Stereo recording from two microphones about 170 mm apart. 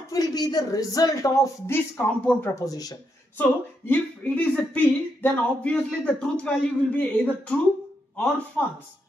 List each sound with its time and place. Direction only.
0.1 s speech: 20° left (ahead or behind)